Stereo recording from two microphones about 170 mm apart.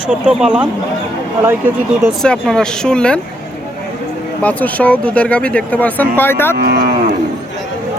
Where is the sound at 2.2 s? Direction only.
5° left (ahead or behind).